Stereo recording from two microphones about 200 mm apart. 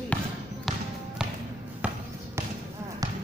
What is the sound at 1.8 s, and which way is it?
Basketball bounce, 5° right (ahead or behind).